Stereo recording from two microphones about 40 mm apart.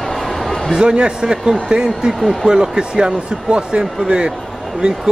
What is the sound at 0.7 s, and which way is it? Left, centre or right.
Speech, right.